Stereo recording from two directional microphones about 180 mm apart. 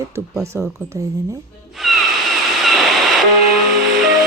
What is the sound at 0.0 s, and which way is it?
Speech, 15° right (ahead or behind).